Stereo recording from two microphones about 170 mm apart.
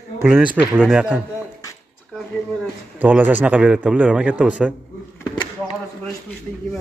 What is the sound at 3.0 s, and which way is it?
A man's voice, 10° right (ahead or behind).